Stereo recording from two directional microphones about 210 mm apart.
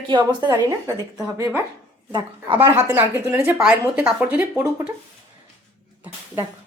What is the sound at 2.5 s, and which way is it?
A woman's voice, 10° right (ahead or behind).